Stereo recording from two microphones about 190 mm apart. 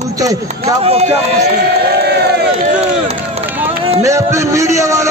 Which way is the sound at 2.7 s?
35° right (ahead or behind).